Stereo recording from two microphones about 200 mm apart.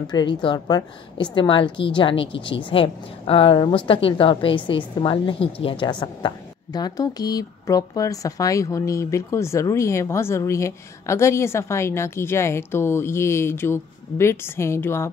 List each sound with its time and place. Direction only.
0.1 s a woman's voice: 25° left (ahead or behind)